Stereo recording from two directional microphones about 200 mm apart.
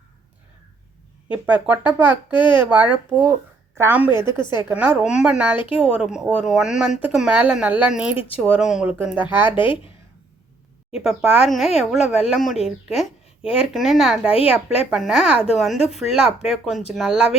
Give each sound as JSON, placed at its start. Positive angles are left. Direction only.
{"t": 1.3, "sound": "speech", "side_deg": -10}
{"t": 5.5, "sound": "a woman's voice", "side_deg": 25}
{"t": 5.8, "sound": "speech", "side_deg": -5}
{"t": 9.6, "sound": "a woman's voice", "side_deg": 25}
{"t": 11.0, "sound": "speech", "side_deg": 0}
{"t": 11.9, "sound": "speech", "side_deg": 35}
{"t": 12.3, "sound": "speech", "side_deg": 0}